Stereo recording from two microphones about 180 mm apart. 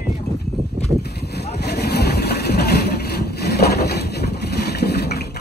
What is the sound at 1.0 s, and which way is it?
Boat, 65° left (ahead or behind).